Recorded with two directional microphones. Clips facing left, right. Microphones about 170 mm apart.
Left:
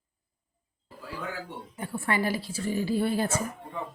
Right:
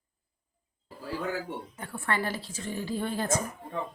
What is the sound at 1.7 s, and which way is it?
A woman's voice, 10° left (ahead or behind).